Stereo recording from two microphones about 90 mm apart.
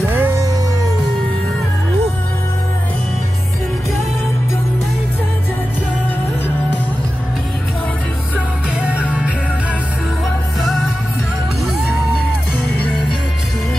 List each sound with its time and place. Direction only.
0.1 s music: 25° right (ahead or behind)
8.8 s music: 15° right (ahead or behind)
10.6 s music: centre (ahead or behind)